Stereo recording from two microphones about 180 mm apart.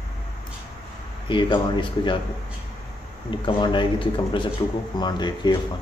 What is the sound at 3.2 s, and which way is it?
Speech, 25° left (ahead or behind).